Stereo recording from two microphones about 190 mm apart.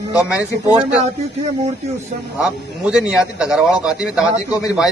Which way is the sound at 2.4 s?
5° right (ahead or behind).